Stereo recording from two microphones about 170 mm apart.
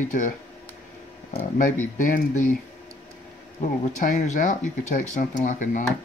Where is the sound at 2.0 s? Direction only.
50° left (ahead or behind).